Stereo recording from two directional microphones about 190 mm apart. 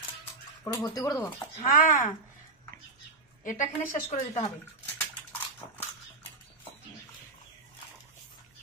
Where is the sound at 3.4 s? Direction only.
45° left (ahead or behind).